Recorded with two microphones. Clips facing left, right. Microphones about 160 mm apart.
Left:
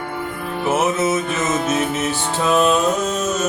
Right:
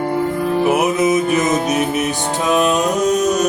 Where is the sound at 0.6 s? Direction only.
15° right (ahead or behind).